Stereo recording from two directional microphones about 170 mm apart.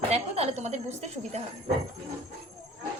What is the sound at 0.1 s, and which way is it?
A woman's voice, 35° right (ahead or behind).